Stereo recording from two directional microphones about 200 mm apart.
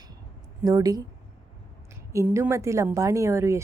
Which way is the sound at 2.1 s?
15° right (ahead or behind).